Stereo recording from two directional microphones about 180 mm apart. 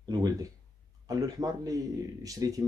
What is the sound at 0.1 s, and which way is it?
Speech, 20° right (ahead or behind).